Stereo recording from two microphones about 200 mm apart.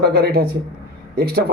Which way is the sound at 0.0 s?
50° right (ahead or behind).